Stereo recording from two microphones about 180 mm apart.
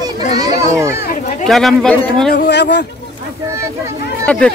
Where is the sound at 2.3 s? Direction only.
65° left (ahead or behind).